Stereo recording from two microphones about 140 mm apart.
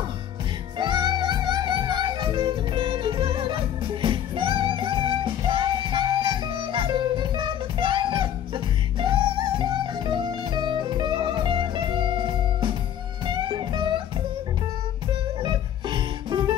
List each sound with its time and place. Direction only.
0.7 s music: 35° right (ahead or behind)
15.4 s music: 35° right (ahead or behind)